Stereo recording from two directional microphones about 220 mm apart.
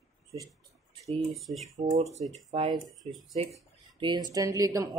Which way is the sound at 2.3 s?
25° right (ahead or behind).